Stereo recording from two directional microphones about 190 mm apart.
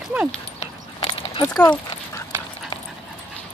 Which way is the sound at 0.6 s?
30° left (ahead or behind).